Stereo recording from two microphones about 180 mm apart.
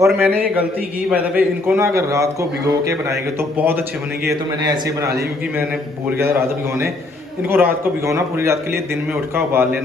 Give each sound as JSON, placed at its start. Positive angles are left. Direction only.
{"t": 0.1, "sound": "a man's voice", "side_deg": 5}
{"t": 1.1, "sound": "a man's voice", "side_deg": -10}